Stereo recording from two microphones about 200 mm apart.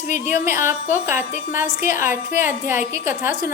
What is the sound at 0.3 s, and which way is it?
A woman's voice, 10° right (ahead or behind).